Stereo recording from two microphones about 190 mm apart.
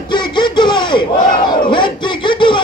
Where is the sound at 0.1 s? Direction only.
25° left (ahead or behind).